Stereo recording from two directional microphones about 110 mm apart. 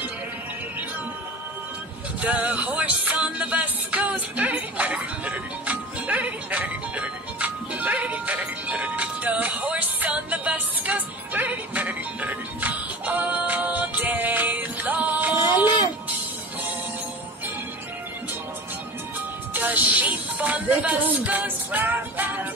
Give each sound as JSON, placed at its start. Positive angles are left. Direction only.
{"t": 2.1, "sound": "music", "side_deg": -15}
{"t": 19.5, "sound": "music", "side_deg": -15}